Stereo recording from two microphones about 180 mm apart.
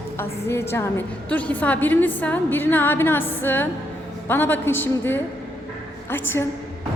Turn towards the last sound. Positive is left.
turn(degrees=10)  # may be behind; listen again after turning